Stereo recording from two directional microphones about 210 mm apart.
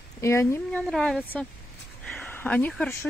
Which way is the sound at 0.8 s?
Centre (ahead or behind).